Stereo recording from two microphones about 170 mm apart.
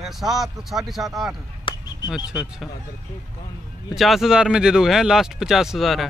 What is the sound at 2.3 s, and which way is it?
Speech, 5° right (ahead or behind).